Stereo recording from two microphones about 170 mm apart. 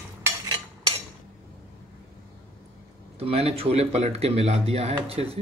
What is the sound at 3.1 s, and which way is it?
Speech, 35° right (ahead or behind).